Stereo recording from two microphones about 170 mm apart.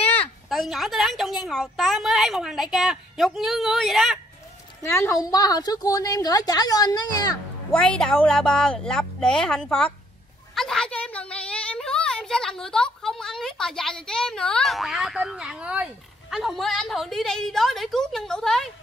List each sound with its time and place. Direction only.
0.5 s a woman's voice: centre (ahead or behind)
4.8 s a woman's voice: 15° left (ahead or behind)
7.7 s a woman's voice: 5° left (ahead or behind)